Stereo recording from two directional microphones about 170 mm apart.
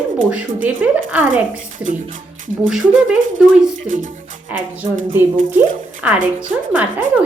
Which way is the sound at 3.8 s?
50° right (ahead or behind).